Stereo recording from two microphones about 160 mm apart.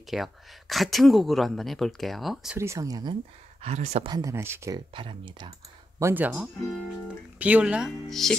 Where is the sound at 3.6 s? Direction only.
40° right (ahead or behind).